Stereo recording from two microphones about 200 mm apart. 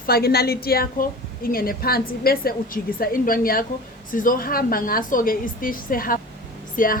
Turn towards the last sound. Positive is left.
turn(degrees=40)  # may be behind; listen again after turning